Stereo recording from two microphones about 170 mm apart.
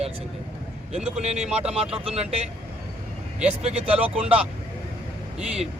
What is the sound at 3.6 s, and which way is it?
Speech, 40° right (ahead or behind).